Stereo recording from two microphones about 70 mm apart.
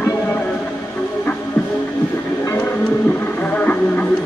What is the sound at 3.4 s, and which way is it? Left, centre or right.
Music, left.